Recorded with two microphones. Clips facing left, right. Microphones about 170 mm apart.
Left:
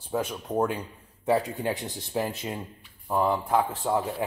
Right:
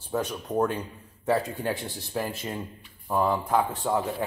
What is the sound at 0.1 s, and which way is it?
A man's voice, 10° left (ahead or behind).